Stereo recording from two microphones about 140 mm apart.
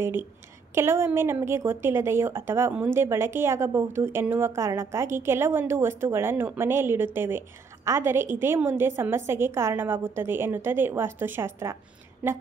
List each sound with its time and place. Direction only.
0.0 s a woman's voice: 15° right (ahead or behind)